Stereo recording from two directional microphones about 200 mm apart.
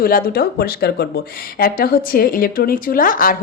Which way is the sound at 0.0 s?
45° left (ahead or behind).